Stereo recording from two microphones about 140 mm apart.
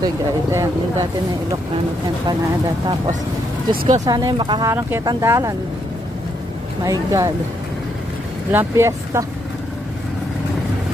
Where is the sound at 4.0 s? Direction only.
25° right (ahead or behind).